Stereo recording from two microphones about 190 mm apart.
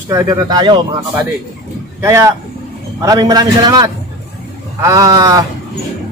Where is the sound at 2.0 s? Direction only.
15° right (ahead or behind).